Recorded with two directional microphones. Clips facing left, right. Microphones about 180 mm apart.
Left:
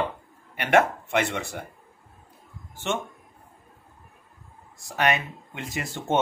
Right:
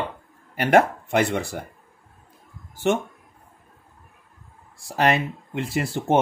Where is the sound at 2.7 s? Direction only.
35° right (ahead or behind).